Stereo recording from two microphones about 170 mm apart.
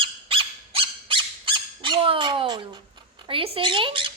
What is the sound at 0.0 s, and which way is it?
Squawk, 30° right (ahead or behind).